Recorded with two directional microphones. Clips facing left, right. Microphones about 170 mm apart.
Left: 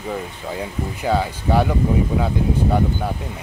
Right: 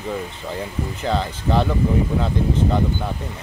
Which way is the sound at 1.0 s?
10° left (ahead or behind).